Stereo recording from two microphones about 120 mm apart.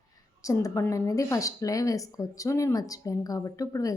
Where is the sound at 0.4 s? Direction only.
25° left (ahead or behind).